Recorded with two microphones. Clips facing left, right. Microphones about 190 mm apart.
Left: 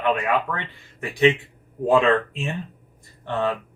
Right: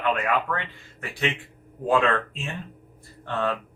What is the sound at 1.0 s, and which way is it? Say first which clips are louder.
Speech: left 10 dB; 15° left (ahead or behind).